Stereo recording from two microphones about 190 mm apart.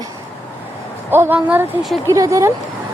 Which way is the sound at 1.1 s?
10° right (ahead or behind).